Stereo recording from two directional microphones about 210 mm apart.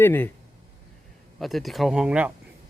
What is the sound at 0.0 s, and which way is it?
Speech, 10° left (ahead or behind).